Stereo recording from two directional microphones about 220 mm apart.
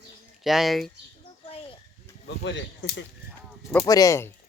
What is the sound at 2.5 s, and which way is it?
Speech, 50° left (ahead or behind).